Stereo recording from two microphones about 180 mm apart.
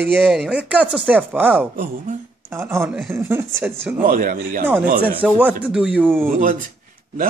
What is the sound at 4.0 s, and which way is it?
Speech, 50° right (ahead or behind).